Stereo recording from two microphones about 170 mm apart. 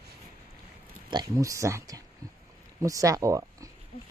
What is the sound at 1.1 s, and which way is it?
Speech, 20° right (ahead or behind).